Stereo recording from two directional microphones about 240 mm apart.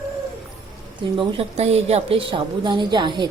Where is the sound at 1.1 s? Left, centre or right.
Right.